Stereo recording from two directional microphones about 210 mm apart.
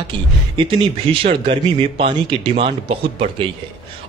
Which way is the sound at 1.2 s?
25° right (ahead or behind).